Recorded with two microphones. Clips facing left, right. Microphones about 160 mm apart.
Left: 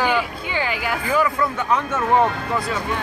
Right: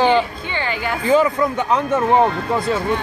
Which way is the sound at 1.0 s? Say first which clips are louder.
Right 6 dB; 25° right (ahead or behind).